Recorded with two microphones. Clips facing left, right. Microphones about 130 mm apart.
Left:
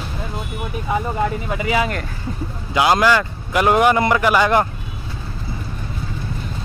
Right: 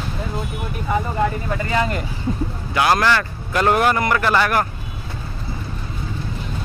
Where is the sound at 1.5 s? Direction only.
10° left (ahead or behind).